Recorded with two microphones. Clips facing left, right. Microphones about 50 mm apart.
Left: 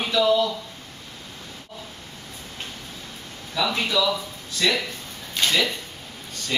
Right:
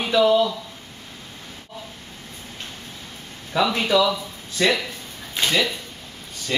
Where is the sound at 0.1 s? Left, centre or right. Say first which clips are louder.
Right 3 dB; right.